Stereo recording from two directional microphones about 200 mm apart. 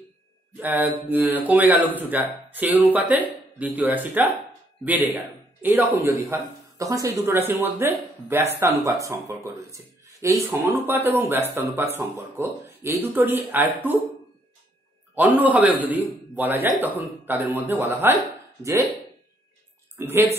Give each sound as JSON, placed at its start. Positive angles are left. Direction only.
{"t": 0.6, "sound": "speech", "side_deg": -10}
{"t": 15.1, "sound": "speech", "side_deg": -10}
{"t": 20.0, "sound": "speech", "side_deg": -10}